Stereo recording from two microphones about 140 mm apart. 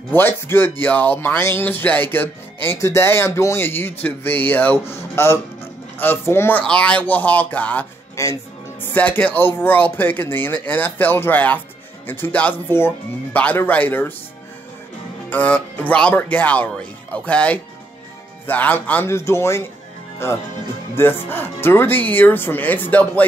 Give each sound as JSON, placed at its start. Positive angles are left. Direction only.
{"t": 0.1, "sound": "speech", "side_deg": 15}
{"t": 15.2, "sound": "speech", "side_deg": 10}